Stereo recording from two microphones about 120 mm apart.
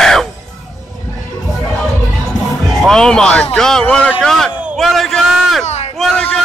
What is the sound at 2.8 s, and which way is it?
Speech, 5° left (ahead or behind).